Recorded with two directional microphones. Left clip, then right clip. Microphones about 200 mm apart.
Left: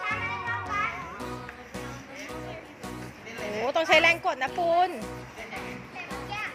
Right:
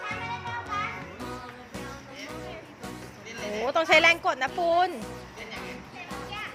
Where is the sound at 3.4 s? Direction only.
Centre (ahead or behind).